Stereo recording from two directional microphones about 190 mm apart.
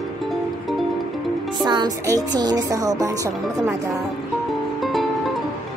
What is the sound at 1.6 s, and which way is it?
Music, 20° right (ahead or behind).